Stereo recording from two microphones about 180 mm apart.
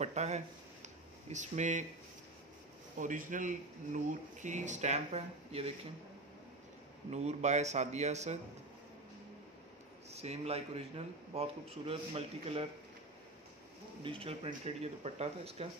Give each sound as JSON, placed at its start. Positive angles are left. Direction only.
{"t": 0.0, "sound": "a man's voice", "side_deg": -40}
{"t": 0.8, "sound": "a sound", "side_deg": -40}
{"t": 3.0, "sound": "speech", "side_deg": -45}
{"t": 7.1, "sound": "a man's voice", "side_deg": -40}
{"t": 10.1, "sound": "a man's voice", "side_deg": -35}
{"t": 14.0, "sound": "a man's voice", "side_deg": -30}